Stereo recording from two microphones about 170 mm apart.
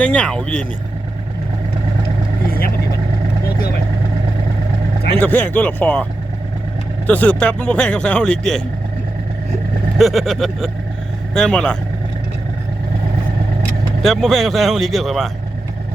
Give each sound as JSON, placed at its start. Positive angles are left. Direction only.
{"t": 0.0, "sound": "speech", "side_deg": 5}
{"t": 2.5, "sound": "vehicle", "side_deg": 60}
{"t": 5.2, "sound": "speech", "side_deg": 10}
{"t": 7.1, "sound": "speech", "side_deg": 10}
{"t": 10.0, "sound": "speech", "side_deg": 0}
{"t": 14.0, "sound": "speech", "side_deg": 0}